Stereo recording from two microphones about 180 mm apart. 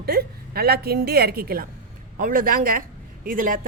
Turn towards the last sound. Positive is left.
turn(degrees=-50)  # may be behind; listen again after turning